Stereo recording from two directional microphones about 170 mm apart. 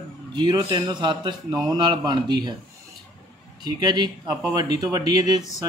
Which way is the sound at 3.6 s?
25° right (ahead or behind).